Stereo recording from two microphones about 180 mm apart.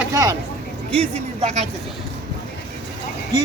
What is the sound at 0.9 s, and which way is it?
Speech, 35° right (ahead or behind).